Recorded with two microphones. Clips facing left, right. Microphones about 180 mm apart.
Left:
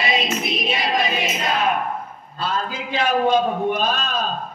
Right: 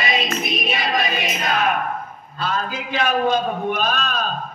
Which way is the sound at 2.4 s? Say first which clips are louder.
Even; 30° left (ahead or behind).